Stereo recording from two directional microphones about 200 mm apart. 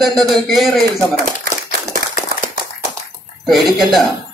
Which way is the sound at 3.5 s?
Centre (ahead or behind).